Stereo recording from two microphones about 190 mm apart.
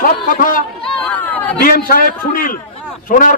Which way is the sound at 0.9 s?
10° left (ahead or behind).